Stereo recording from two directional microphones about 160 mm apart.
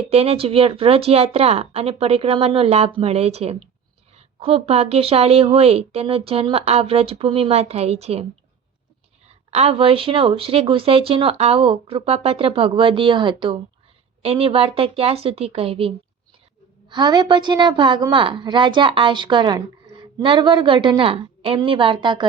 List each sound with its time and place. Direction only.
0.1 s speech: 40° right (ahead or behind)
16.9 s a woman's voice: 25° right (ahead or behind)